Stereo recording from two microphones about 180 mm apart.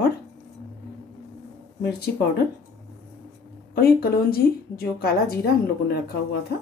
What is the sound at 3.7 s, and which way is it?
A woman's voice, 55° left (ahead or behind).